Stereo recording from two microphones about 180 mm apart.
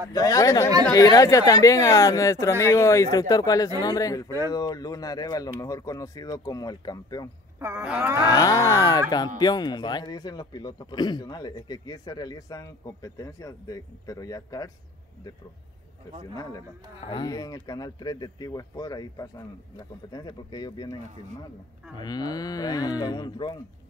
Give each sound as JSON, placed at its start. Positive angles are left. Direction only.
{"t": 0.1, "sound": "a man's voice", "side_deg": 20}
{"t": 7.6, "sound": "groan", "side_deg": -10}
{"t": 8.3, "sound": "a man's voice", "side_deg": 20}
{"t": 17.0, "sound": "a man's voice", "side_deg": 30}
{"t": 21.9, "sound": "a man's voice", "side_deg": 20}